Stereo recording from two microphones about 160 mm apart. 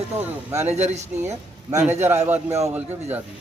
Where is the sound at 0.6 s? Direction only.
45° right (ahead or behind).